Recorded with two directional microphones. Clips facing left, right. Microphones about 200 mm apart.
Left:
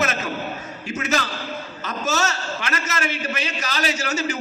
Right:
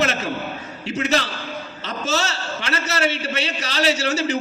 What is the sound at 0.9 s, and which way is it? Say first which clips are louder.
A man's voice: right 3 dB; 35° right (ahead or behind).